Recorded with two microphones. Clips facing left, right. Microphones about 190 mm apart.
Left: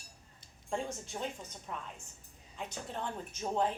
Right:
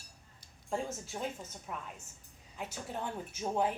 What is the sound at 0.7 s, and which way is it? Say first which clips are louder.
A woman's voice: even; 5° right (ahead or behind).